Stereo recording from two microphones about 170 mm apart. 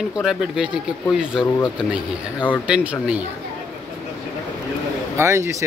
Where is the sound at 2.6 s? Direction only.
5° right (ahead or behind).